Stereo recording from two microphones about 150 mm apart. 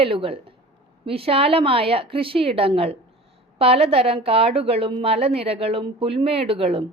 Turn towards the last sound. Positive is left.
turn(degrees=-40)  # may be behind; listen again after turning